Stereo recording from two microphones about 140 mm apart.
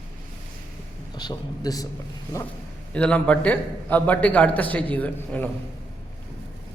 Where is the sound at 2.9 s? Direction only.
10° left (ahead or behind).